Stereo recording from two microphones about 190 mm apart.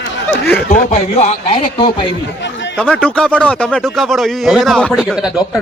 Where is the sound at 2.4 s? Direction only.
70° left (ahead or behind).